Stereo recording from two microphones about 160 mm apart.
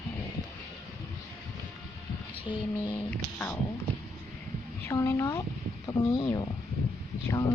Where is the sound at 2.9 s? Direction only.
10° left (ahead or behind).